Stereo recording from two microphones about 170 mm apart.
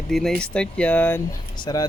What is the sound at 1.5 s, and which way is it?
Speech, 25° left (ahead or behind).